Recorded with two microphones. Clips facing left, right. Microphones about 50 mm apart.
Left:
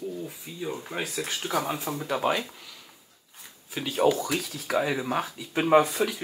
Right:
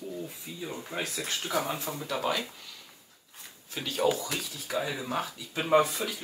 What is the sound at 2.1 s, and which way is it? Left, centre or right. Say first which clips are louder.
Speech: left 4 dB; left.